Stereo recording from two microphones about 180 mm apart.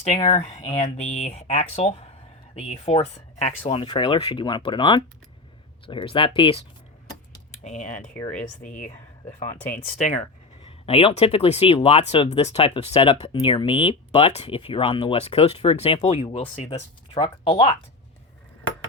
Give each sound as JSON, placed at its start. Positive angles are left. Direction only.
{"t": 0.3, "sound": "speech", "side_deg": 40}
{"t": 7.6, "sound": "speech", "side_deg": 40}
{"t": 10.6, "sound": "speech", "side_deg": 30}